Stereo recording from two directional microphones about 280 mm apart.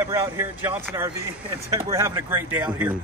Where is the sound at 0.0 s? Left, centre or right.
Centre.